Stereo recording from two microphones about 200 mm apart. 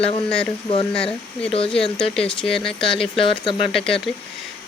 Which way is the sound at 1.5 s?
25° left (ahead or behind).